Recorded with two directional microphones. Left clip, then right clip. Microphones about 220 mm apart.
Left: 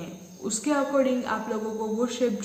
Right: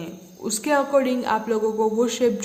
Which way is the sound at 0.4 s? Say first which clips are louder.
Right 5 dB; 45° right (ahead or behind).